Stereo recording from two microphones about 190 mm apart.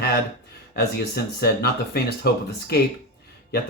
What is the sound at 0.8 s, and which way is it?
Speech, 55° left (ahead or behind).